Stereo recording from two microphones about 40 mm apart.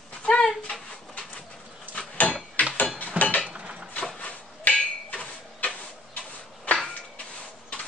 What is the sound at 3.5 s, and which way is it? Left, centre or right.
Cutlery, right.